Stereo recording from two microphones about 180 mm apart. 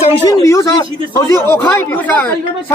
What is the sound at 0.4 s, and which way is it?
A man's voice, 20° left (ahead or behind).